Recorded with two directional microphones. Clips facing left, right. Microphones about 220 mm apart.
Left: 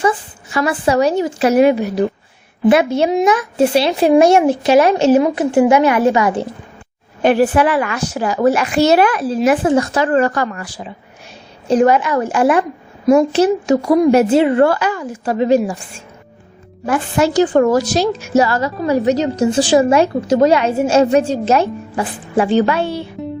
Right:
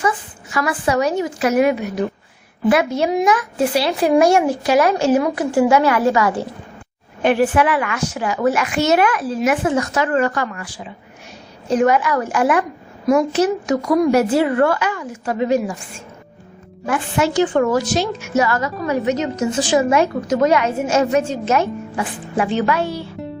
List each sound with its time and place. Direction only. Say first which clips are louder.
0.5 s speech: left 4 dB; 30° left (ahead or behind)
7.2 s a woman's voice: left 3 dB; 35° left (ahead or behind)
16.8 s a woman's voice: left 3 dB; 35° left (ahead or behind)